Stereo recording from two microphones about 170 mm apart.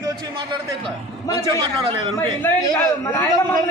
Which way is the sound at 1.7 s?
35° right (ahead or behind).